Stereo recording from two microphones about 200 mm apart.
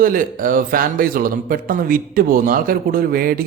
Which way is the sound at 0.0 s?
45° right (ahead or behind).